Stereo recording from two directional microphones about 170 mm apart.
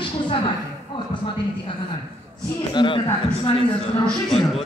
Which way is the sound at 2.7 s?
30° left (ahead or behind).